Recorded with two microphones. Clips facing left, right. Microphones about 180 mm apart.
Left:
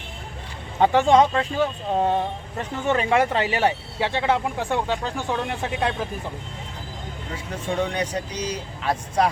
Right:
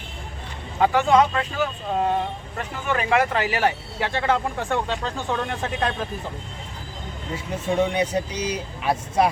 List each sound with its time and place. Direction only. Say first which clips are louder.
0.8 s speech: left 1 dB; 30° left (ahead or behind); by 6.1 s 10° left (ahead or behind)
7.9 s speech: right 3 dB; 10° right (ahead or behind)